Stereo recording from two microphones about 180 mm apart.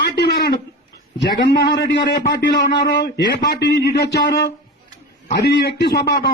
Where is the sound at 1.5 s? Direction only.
60° left (ahead or behind).